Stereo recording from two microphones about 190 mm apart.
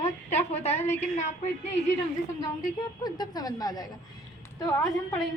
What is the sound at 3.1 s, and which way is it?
Speech, 20° left (ahead or behind).